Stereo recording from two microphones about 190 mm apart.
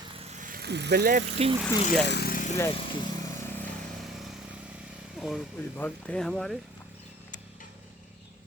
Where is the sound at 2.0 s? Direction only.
55° left (ahead or behind).